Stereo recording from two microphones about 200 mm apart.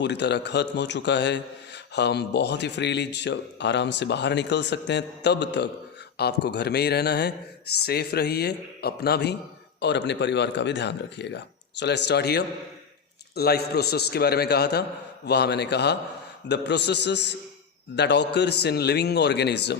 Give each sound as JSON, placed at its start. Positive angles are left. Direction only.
{"t": 0.0, "sound": "a man's voice", "side_deg": 60}